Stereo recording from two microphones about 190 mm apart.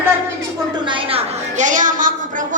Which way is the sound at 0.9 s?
35° right (ahead or behind).